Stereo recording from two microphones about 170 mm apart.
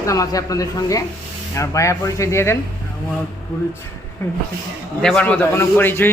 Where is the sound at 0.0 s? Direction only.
20° left (ahead or behind).